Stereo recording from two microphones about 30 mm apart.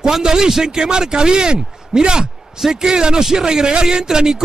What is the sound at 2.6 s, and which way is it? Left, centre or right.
Speech, centre.